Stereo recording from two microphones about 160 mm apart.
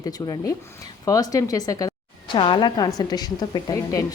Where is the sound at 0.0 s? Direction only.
25° left (ahead or behind).